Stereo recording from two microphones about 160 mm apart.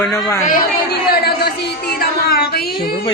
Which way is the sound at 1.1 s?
80° left.